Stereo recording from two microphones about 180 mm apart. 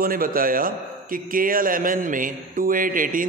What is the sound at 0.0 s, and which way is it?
A man's voice, 50° right (ahead or behind).